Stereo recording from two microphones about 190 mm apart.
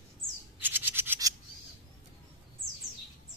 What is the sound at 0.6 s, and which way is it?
Toothbrush, 10° right (ahead or behind).